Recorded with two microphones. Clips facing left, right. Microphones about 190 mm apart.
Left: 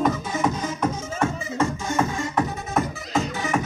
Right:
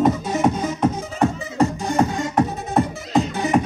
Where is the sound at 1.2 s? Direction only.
35° right (ahead or behind).